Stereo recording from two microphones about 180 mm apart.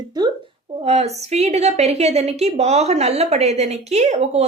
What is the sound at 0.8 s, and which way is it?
A woman's voice, 35° right (ahead or behind).